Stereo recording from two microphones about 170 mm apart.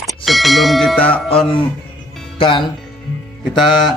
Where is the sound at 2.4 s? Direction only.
30° left (ahead or behind).